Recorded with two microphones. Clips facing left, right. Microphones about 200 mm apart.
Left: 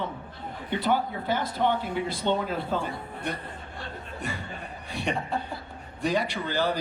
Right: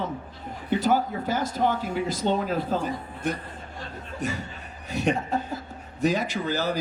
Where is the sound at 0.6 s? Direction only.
40° right (ahead or behind).